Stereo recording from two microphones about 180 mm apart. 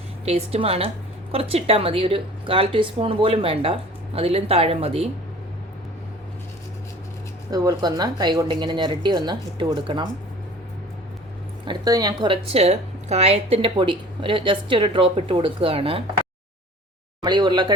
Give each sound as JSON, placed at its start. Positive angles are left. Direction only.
{"t": 0.3, "sound": "a woman's voice", "side_deg": -35}
{"t": 7.5, "sound": "speech", "side_deg": -20}
{"t": 11.6, "sound": "a woman's voice", "side_deg": -25}
{"t": 17.2, "sound": "speech", "side_deg": -25}